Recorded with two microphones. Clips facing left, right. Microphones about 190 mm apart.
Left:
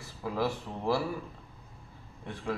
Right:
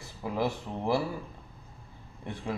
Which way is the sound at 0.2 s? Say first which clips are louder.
Right 1 dB; 20° right (ahead or behind).